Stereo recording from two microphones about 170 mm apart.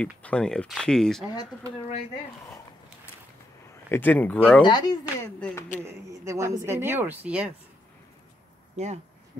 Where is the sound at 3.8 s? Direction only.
10° left (ahead or behind).